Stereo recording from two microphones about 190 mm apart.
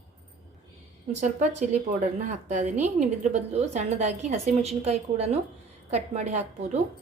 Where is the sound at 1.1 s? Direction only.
35° right (ahead or behind).